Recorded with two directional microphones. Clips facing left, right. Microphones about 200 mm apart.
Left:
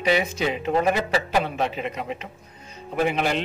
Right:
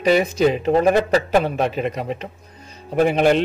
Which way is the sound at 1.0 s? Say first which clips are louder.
Right 6 dB; 50° right (ahead or behind).